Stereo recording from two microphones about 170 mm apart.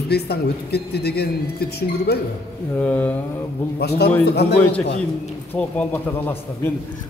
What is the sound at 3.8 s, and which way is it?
Speech, 75° left (ahead or behind).